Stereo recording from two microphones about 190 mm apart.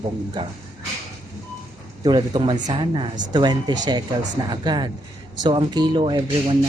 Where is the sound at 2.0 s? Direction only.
25° right (ahead or behind).